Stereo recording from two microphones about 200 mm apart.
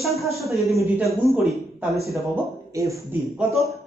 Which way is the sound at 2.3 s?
15° right (ahead or behind).